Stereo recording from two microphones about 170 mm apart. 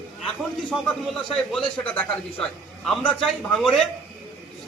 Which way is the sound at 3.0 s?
Centre (ahead or behind).